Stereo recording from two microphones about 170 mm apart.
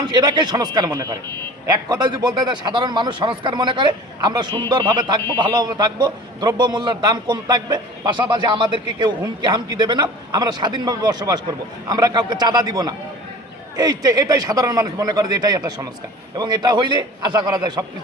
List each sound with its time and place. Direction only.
0.0 s a man's voice: 25° right (ahead or behind)